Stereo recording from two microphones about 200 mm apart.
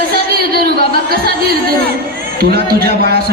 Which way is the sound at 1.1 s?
50° right (ahead or behind).